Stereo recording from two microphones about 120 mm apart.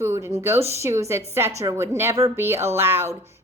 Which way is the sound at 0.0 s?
25° right (ahead or behind).